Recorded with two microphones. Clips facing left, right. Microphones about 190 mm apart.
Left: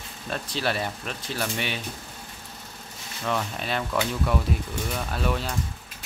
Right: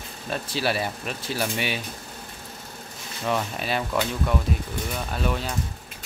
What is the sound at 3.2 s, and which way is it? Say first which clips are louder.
Speech: right 2 dB; 10° right (ahead or behind).